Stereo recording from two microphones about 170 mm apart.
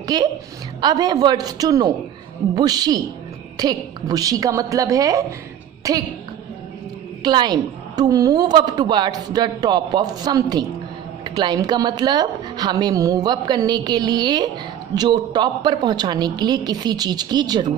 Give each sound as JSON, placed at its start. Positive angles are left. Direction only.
{"t": 0.0, "sound": "a woman's voice", "side_deg": -25}
{"t": 7.2, "sound": "a woman's voice", "side_deg": -25}